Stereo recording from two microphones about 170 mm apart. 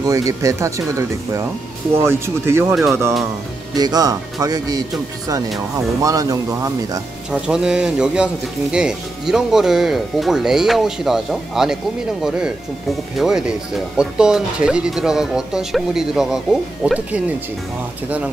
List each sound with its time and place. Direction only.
0.0 s speech: 20° right (ahead or behind)
6.0 s speech: 20° right (ahead or behind)
7.2 s speech: 5° right (ahead or behind)